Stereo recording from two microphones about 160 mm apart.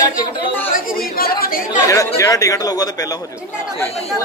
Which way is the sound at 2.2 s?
20° left (ahead or behind).